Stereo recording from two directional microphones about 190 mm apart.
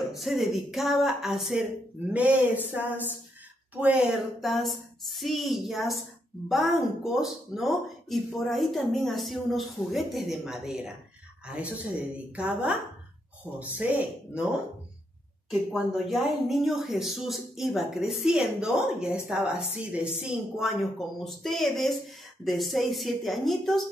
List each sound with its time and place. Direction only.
0.1 s speech: centre (ahead or behind)
15.7 s speech: centre (ahead or behind)